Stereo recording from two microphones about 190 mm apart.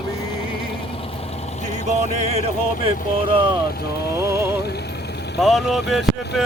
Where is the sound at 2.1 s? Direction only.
35° right (ahead or behind).